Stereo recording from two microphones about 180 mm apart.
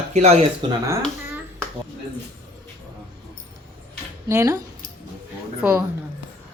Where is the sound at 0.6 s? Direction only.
25° right (ahead or behind).